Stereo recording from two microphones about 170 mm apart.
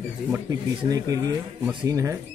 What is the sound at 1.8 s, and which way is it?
Speech, 20° right (ahead or behind).